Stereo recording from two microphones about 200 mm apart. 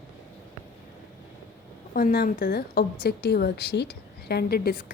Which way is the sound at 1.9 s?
50° left (ahead or behind).